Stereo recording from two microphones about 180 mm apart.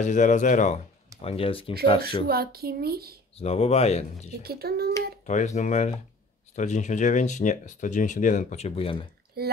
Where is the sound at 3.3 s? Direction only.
35° left (ahead or behind).